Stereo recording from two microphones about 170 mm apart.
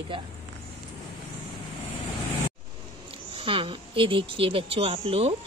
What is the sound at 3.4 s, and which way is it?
Speech, 30° right (ahead or behind).